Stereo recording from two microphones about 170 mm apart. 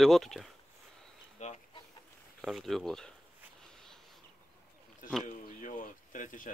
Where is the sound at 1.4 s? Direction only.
40° left (ahead or behind).